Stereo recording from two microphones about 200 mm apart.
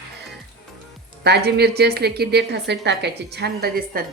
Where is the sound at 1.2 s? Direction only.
55° right (ahead or behind).